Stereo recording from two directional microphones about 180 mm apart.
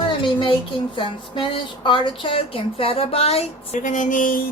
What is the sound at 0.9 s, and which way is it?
A woman's voice, 30° left (ahead or behind).